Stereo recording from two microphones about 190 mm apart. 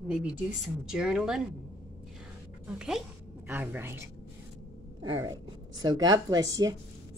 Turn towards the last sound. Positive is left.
turn(degrees=-20)  # may be behind; listen again after turning